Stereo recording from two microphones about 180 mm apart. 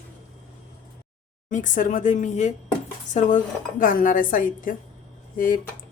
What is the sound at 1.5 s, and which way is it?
Speech, 45° left (ahead or behind).